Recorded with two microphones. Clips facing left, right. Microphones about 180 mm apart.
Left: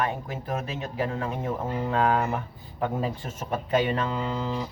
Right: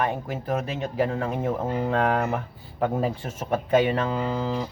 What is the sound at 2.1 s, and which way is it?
Speech, 50° right (ahead or behind).